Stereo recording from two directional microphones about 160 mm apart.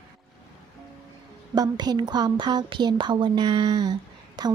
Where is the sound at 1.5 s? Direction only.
25° right (ahead or behind).